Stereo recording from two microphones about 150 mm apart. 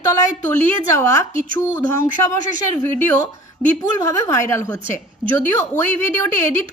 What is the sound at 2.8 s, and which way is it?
Speech, 15° left (ahead or behind).